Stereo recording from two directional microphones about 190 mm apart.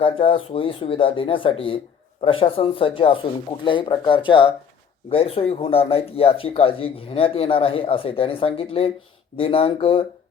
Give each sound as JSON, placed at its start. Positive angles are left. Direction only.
{"t": 0.0, "sound": "speech", "side_deg": 25}